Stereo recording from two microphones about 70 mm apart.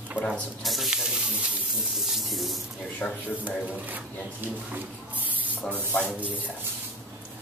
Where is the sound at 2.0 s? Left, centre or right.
Centre.